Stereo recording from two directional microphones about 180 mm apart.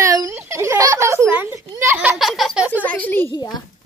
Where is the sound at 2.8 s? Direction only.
10° left (ahead or behind).